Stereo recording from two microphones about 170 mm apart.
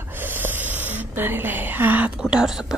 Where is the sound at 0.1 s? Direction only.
10° right (ahead or behind).